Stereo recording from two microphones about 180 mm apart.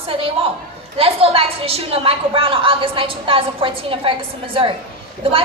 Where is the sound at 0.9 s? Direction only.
30° right (ahead or behind).